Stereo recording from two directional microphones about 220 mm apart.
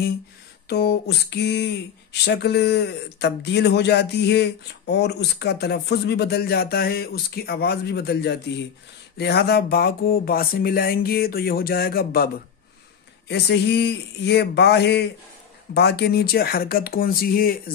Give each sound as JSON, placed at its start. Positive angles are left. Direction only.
{"t": 0.7, "sound": "speech", "side_deg": 45}
{"t": 13.3, "sound": "speech", "side_deg": 50}